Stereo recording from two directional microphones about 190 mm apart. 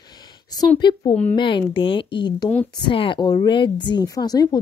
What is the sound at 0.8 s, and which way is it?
A woman's voice, 25° left (ahead or behind).